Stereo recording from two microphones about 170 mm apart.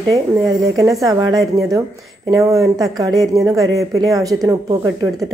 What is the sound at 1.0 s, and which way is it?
A woman's voice, 20° right (ahead or behind).